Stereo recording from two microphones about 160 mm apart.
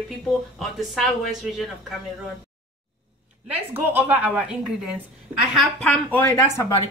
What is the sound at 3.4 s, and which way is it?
A woman's voice, 10° right (ahead or behind).